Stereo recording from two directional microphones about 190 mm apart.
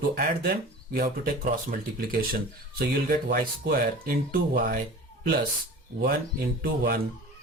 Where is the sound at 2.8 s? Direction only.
50° right (ahead or behind).